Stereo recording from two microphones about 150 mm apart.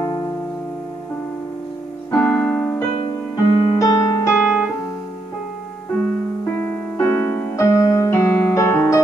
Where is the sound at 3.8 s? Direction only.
25° left (ahead or behind).